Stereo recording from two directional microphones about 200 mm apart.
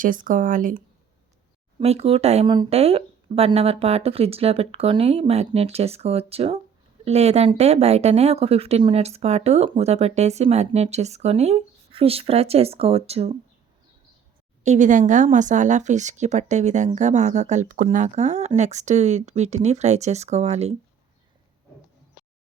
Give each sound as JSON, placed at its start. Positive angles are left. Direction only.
{"t": 0.0, "sound": "speech", "side_deg": -40}
{"t": 1.8, "sound": "speech", "side_deg": -30}
{"t": 14.6, "sound": "speech", "side_deg": -35}